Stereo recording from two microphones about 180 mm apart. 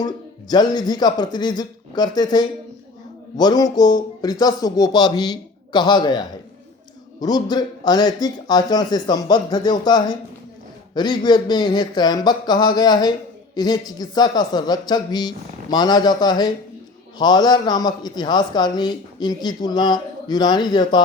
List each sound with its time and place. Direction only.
0.0 s a man's voice: 25° left (ahead or behind)